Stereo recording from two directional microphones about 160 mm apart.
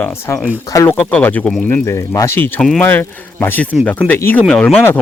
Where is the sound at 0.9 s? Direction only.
10° left (ahead or behind).